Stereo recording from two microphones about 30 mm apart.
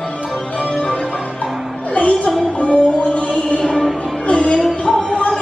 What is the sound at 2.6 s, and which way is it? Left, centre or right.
Music, left.